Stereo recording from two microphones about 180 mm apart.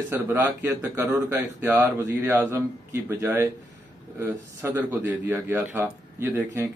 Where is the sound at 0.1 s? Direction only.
15° right (ahead or behind).